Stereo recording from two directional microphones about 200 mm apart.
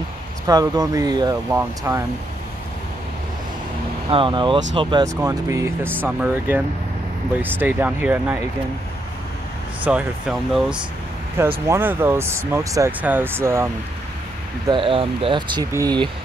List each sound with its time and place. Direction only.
0.5 s speech: 20° right (ahead or behind)
4.1 s speech: 25° right (ahead or behind); by 8.4 s 10° right (ahead or behind)
9.8 s speech: 5° right (ahead or behind)
14.7 s speech: 25° right (ahead or behind)